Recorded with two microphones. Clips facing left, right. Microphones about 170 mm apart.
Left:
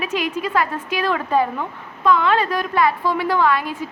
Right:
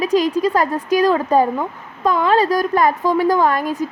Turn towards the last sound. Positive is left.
turn(degrees=-45)  # may be behind; listen again after turning